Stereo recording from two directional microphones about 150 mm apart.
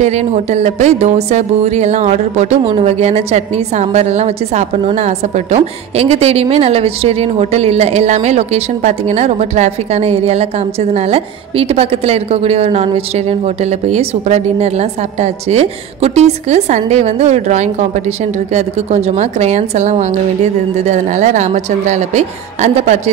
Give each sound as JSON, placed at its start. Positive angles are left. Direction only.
{"t": 0.0, "sound": "speech", "side_deg": -50}